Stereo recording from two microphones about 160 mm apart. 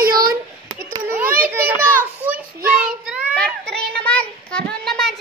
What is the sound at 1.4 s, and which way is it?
Speech, 10° right (ahead or behind).